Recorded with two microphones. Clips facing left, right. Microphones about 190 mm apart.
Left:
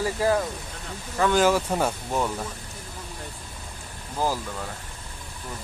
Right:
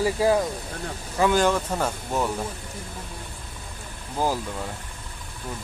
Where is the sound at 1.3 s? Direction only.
5° left (ahead or behind).